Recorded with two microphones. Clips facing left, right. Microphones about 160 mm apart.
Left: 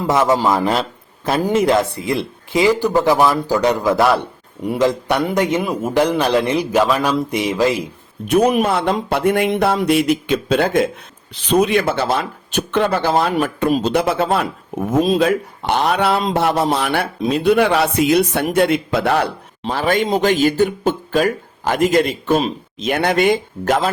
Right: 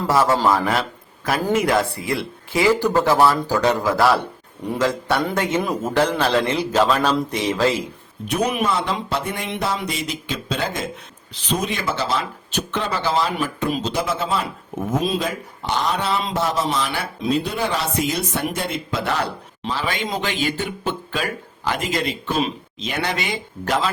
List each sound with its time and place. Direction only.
0.1 s a man's voice: 20° left (ahead or behind)
8.3 s speech: 50° left (ahead or behind)
22.4 s speech: 35° left (ahead or behind)
22.9 s speech: 55° left (ahead or behind)